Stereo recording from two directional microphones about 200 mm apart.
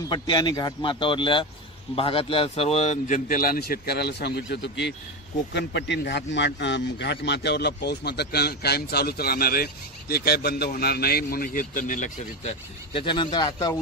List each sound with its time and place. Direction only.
0.1 s speech: 20° left (ahead or behind)